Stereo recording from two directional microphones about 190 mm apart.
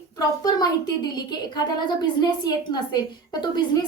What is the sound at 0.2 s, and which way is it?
A woman's voice, 20° left (ahead or behind).